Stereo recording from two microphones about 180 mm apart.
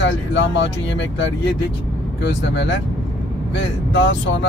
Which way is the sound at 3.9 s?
90° left.